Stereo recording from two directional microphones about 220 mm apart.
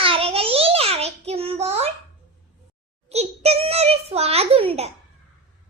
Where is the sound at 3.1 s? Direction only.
30° right (ahead or behind).